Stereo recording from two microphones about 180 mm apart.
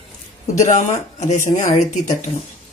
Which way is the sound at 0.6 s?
40° left (ahead or behind).